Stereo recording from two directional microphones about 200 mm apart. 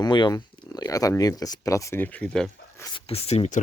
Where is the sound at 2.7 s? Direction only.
15° left (ahead or behind).